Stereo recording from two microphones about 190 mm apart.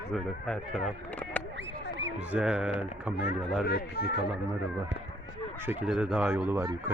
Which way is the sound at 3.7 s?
55° left (ahead or behind).